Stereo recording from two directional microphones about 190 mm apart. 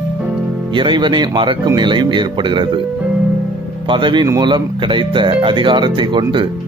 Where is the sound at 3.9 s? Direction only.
25° right (ahead or behind).